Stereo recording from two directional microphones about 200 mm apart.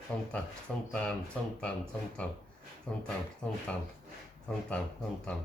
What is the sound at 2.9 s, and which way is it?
Speech, 5° left (ahead or behind).